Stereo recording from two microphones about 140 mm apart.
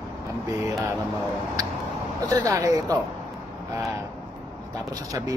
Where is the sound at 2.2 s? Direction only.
25° right (ahead or behind).